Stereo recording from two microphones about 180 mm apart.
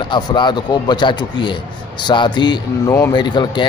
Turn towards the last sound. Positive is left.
turn(degrees=25)  # may be behind; listen again after turning